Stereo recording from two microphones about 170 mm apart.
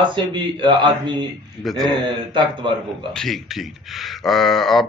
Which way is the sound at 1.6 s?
Centre (ahead or behind).